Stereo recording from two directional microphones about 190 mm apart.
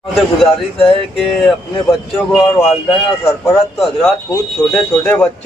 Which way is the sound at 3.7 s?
Centre (ahead or behind).